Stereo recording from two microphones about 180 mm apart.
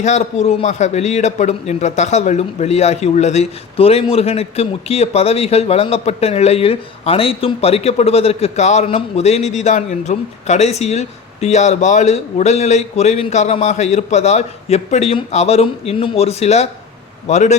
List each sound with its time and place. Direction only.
0.0 s a man's voice: 40° left (ahead or behind)